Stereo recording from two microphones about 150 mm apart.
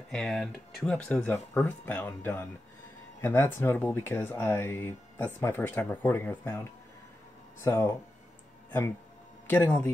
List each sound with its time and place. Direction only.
0.1 s speech: 5° left (ahead or behind)
9.5 s speech: 10° left (ahead or behind)